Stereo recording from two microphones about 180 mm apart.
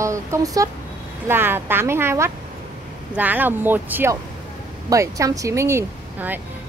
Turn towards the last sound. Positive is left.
turn(degrees=-10)  # may be behind; listen again after turning